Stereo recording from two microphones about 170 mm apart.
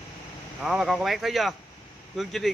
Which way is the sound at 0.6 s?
Centre (ahead or behind).